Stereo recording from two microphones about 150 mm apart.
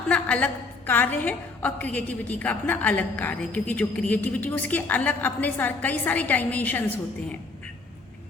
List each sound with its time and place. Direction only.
0.1 s a woman's voice: 10° left (ahead or behind)